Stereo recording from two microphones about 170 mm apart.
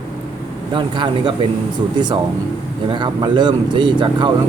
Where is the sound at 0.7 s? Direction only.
30° right (ahead or behind).